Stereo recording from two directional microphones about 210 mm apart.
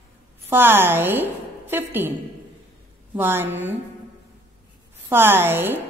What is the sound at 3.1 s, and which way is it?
Speech, 10° right (ahead or behind).